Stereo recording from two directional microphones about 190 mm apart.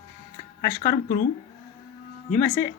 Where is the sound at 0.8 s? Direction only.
20° left (ahead or behind).